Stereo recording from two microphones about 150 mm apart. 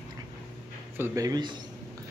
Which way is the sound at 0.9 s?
20° right (ahead or behind).